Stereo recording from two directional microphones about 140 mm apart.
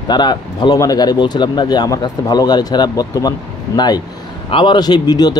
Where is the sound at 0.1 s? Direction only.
30° left (ahead or behind).